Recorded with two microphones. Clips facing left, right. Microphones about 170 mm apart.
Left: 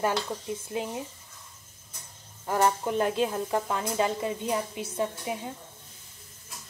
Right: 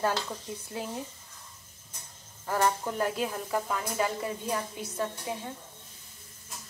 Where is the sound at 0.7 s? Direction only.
20° left (ahead or behind).